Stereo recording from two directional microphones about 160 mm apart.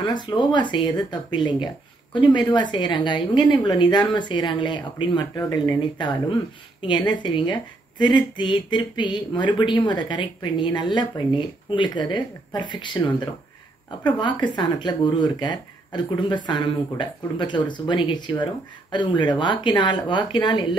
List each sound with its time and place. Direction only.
0.0 s a woman's voice: 30° left (ahead or behind)